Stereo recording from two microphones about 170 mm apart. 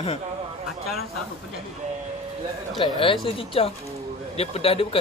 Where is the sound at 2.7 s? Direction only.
30° left (ahead or behind).